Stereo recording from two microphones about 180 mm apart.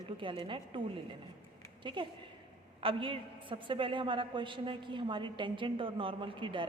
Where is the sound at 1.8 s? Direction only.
25° right (ahead or behind).